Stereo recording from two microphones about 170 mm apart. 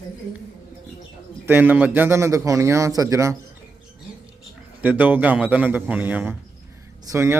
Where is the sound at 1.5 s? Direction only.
10° right (ahead or behind).